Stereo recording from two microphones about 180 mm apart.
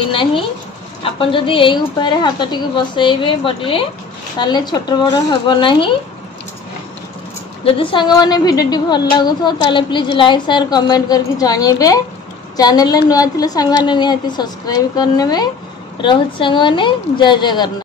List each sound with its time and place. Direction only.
0.1 s a woman's voice: 30° left (ahead or behind)
7.6 s a woman's voice: 30° left (ahead or behind)